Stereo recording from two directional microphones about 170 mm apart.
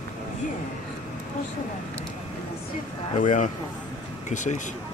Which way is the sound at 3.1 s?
45° left (ahead or behind).